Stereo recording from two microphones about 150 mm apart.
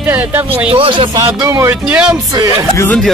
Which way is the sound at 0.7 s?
35° right (ahead or behind).